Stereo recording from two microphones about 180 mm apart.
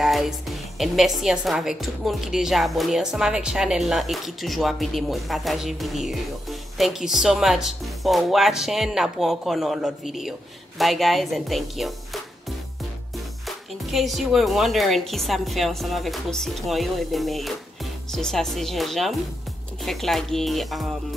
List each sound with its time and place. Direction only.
0.0 s a woman's voice: centre (ahead or behind)
13.8 s a woman's voice: centre (ahead or behind)